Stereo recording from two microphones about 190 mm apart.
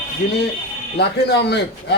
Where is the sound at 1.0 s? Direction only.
65° left (ahead or behind).